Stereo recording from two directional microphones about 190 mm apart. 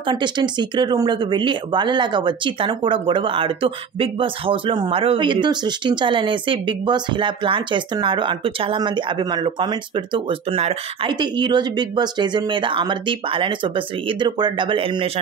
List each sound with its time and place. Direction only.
0.0 s speech: 25° right (ahead or behind)